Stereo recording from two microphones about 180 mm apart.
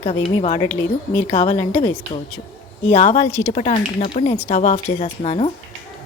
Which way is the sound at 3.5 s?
35° left (ahead or behind).